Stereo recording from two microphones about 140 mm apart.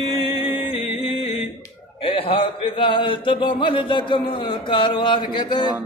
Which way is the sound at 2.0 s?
40° left (ahead or behind).